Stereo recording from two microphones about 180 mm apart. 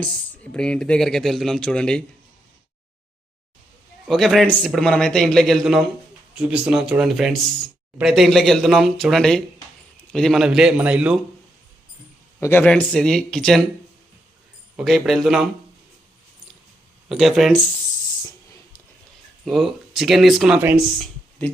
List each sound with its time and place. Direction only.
0.5 s speech: 5° left (ahead or behind)
4.1 s speech: 5° left (ahead or behind)
12.4 s speech: 10° left (ahead or behind)
14.8 s speech: centre (ahead or behind)
17.1 s speech: centre (ahead or behind)
19.5 s speech: centre (ahead or behind)